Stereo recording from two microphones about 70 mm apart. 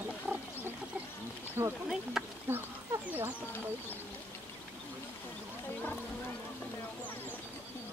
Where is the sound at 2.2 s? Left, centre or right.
Centre.